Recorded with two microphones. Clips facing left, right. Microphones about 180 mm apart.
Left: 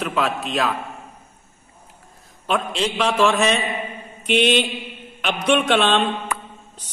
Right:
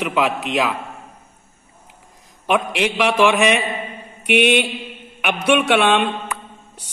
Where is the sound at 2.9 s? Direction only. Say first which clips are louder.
Right 2 dB; 10° right (ahead or behind).